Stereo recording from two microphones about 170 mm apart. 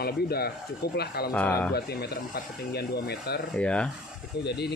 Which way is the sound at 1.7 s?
70° left (ahead or behind).